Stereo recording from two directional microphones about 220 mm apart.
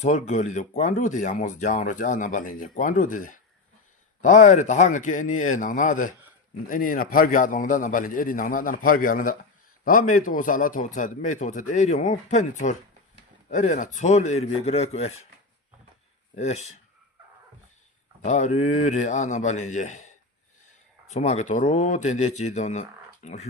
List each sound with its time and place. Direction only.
0.0 s speech: 35° left (ahead or behind)
16.3 s speech: 30° left (ahead or behind)
18.3 s speech: 30° left (ahead or behind)